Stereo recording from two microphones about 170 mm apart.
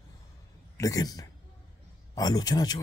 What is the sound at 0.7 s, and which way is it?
A man's voice, 20° left (ahead or behind).